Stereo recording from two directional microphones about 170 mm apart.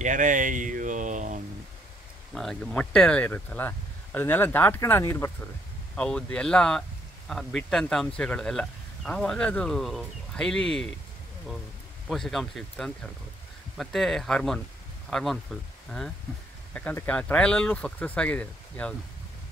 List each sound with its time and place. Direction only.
0.0 s a sound: 50° right (ahead or behind)
2.3 s speech: 5° left (ahead or behind)
12.1 s speech: centre (ahead or behind)